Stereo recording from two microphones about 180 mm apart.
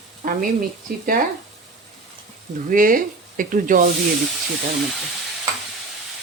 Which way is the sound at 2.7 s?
50° right (ahead or behind).